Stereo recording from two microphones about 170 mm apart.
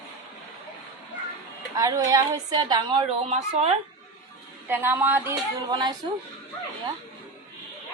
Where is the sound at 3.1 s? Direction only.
40° right (ahead or behind).